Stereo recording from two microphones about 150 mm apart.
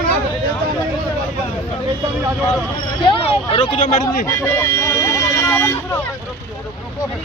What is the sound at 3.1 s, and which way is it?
Speech, 40° left (ahead or behind).